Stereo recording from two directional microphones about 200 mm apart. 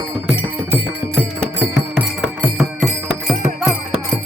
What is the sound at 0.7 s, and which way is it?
Music, 10° right (ahead or behind).